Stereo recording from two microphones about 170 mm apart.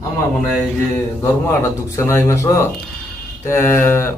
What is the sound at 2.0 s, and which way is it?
A man's voice, 15° left (ahead or behind).